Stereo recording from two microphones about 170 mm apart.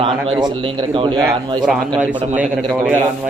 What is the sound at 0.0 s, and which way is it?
A man's voice, 30° right (ahead or behind).